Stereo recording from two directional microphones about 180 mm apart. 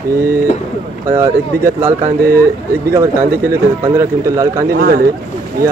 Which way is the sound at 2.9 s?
15° right (ahead or behind).